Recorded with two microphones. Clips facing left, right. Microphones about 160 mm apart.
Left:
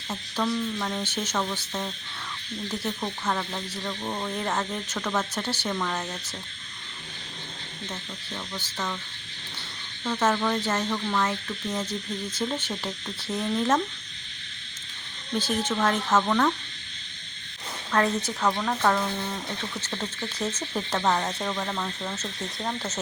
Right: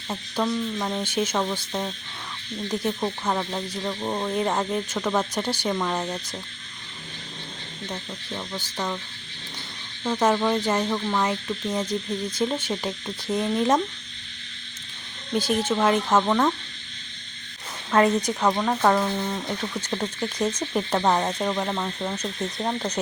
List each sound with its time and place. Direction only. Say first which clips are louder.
0.1 s speech: right 2 dB; 15° right (ahead or behind)
8.5 s speech: right 3 dB; 15° right (ahead or behind)
10.0 s speech: right 3 dB; 15° right (ahead or behind)
15.3 s speech: right 4 dB; 10° right (ahead or behind)
17.9 s speech: right 5 dB; 15° right (ahead or behind)